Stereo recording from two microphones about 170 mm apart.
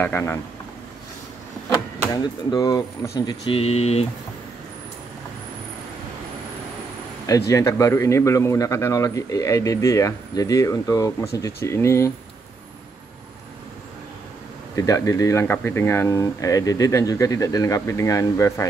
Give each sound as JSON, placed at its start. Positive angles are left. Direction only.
{"t": 0.0, "sound": "speech", "side_deg": 10}
{"t": 1.7, "sound": "speech", "side_deg": 25}
{"t": 7.2, "sound": "speech", "side_deg": 20}
{"t": 14.8, "sound": "speech", "side_deg": 20}